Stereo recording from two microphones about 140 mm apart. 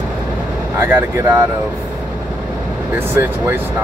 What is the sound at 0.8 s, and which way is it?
Speech, 15° right (ahead or behind).